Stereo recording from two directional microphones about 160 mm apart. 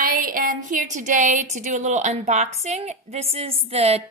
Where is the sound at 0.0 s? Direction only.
60° right (ahead or behind).